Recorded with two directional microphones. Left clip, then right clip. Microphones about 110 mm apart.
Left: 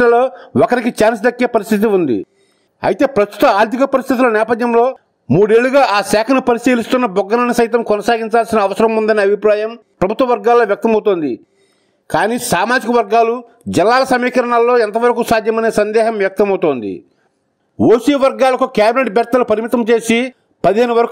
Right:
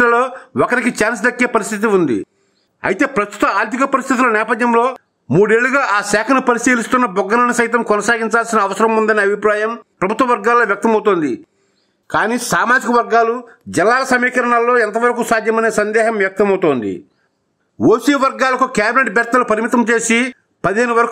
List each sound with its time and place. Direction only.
0.0 s a man's voice: 35° left (ahead or behind)
17.8 s a man's voice: 25° left (ahead or behind)